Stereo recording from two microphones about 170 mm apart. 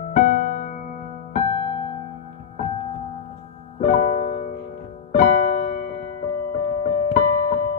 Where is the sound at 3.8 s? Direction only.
40° left (ahead or behind).